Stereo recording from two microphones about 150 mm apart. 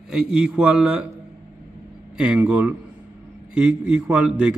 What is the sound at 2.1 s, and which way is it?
A man's voice, 10° right (ahead or behind).